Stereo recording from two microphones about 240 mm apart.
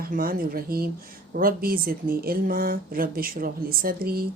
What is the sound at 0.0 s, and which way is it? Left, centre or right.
Speech, right.